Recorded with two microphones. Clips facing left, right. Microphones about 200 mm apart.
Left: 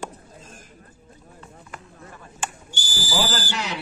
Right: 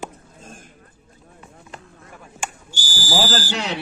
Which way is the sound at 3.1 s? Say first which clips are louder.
Right 3 dB; 60° left (ahead or behind).